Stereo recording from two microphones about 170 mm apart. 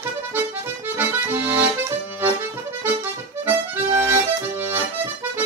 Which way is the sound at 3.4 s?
15° right (ahead or behind).